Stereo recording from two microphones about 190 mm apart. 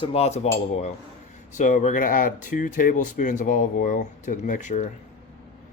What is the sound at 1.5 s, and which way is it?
Speech, 40° left (ahead or behind).